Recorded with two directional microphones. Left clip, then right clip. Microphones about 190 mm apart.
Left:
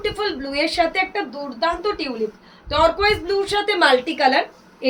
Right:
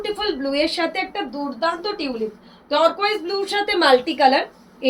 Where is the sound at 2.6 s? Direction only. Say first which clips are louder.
Left 1 dB; 20° left (ahead or behind).